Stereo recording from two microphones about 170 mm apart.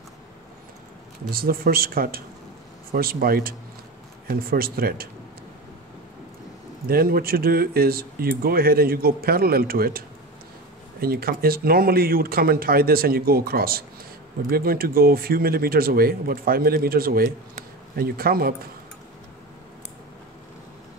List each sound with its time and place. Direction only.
1.3 s speech: 60° right (ahead or behind)
6.9 s speech: 60° right (ahead or behind)